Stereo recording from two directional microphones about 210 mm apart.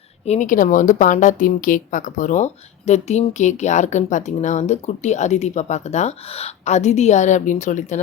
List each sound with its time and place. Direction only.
0.3 s speech: 35° left (ahead or behind)